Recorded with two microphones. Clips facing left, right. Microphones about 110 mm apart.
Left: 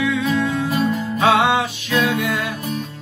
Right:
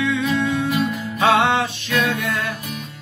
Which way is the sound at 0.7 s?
35° left (ahead or behind).